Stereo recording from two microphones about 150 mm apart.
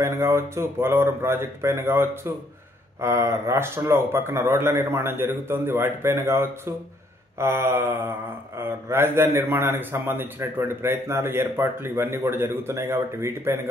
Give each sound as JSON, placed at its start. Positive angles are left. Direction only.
{"t": 0.0, "sound": "a man's voice", "side_deg": -15}